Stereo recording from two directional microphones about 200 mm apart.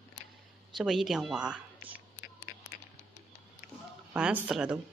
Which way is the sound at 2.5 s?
45° left (ahead or behind).